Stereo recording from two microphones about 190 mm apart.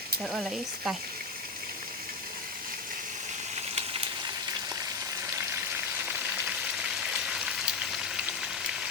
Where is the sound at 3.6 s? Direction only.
35° right (ahead or behind).